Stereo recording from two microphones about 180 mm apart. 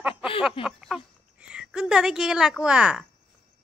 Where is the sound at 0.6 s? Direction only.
Centre (ahead or behind).